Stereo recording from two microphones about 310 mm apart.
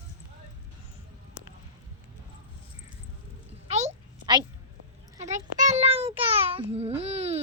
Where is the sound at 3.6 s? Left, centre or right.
Centre.